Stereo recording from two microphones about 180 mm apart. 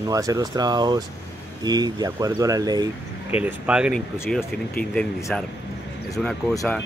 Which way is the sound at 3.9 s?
15° left (ahead or behind).